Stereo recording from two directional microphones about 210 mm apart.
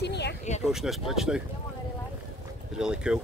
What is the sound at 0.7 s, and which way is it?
Speech, centre (ahead or behind).